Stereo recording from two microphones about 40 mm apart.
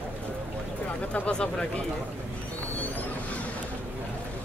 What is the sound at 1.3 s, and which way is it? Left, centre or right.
Speech, centre.